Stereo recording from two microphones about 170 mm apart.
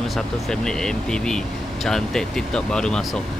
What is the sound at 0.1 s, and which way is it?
Speech, 5° left (ahead or behind).